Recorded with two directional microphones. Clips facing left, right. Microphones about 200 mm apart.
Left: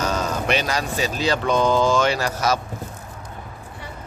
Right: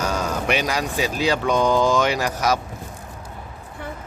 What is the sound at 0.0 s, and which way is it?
Speech, 10° right (ahead or behind).